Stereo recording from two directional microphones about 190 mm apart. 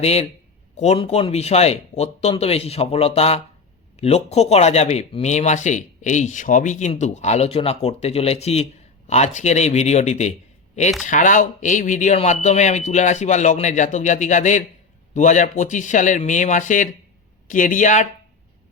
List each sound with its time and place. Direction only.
0.0 s speech: 35° left (ahead or behind)